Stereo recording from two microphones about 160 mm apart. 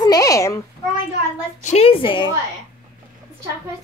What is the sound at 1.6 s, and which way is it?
Speech, 40° left (ahead or behind).